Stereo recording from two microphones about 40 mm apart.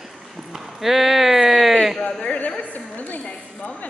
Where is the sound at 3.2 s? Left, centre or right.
Left.